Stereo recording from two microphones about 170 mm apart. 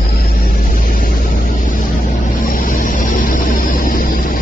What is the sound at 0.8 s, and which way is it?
Vehicle, 55° left (ahead or behind).